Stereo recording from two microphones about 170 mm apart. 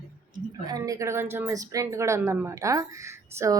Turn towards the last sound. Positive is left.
turn(degrees=-15)  # may be behind; listen again after turning